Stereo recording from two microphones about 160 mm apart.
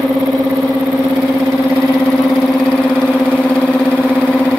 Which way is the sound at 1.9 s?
Centre (ahead or behind).